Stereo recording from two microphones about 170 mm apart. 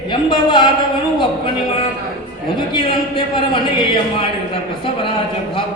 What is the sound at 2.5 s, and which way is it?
A man's voice, 30° left (ahead or behind).